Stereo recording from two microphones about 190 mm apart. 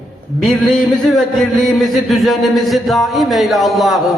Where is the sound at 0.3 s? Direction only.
Centre (ahead or behind).